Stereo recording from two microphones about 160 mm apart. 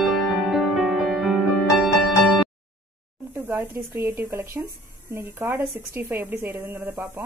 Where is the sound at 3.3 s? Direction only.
15° right (ahead or behind).